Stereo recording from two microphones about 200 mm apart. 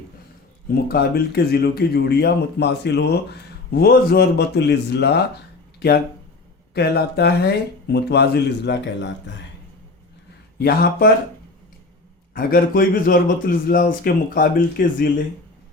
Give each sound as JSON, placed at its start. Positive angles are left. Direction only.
{"t": 0.7, "sound": "a man's voice", "side_deg": 50}
{"t": 6.7, "sound": "speech", "side_deg": 55}
{"t": 10.6, "sound": "a man's voice", "side_deg": 50}
{"t": 12.3, "sound": "a man's voice", "side_deg": 45}